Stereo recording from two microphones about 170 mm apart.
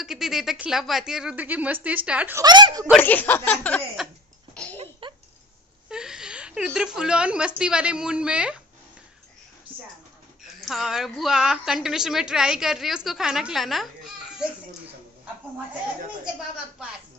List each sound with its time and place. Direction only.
0.0 s a woman's voice: centre (ahead or behind)
2.4 s speech: 25° right (ahead or behind)
3.0 s speech: 10° left (ahead or behind)
5.0 s a sound: 30° right (ahead or behind)
5.9 s a woman's voice: 5° right (ahead or behind)
10.6 s a woman's voice: centre (ahead or behind)